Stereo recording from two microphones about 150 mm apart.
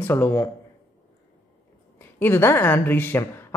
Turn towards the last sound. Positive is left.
turn(degrees=15)  # may be behind; listen again after turning